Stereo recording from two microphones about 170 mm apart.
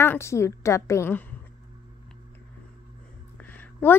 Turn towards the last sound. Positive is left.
turn(degrees=10)  # may be behind; listen again after turning